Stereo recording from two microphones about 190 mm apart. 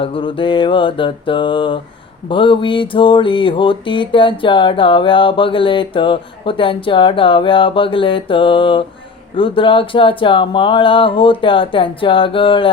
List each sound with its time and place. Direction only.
0.0 s mantra: 25° left (ahead or behind)